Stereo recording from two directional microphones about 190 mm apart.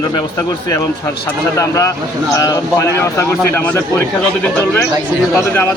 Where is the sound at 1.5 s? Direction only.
15° left (ahead or behind).